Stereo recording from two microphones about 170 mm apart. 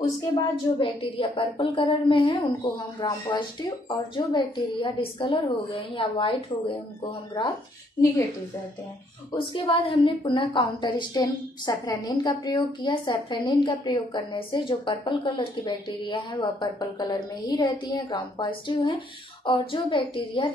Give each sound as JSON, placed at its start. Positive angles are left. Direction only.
{"t": 0.3, "sound": "a woman's voice", "side_deg": 30}
{"t": 9.3, "sound": "a woman's voice", "side_deg": 30}